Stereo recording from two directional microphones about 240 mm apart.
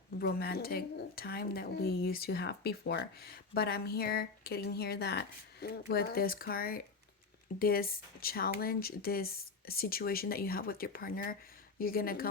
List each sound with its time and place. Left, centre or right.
0.2 s speech: left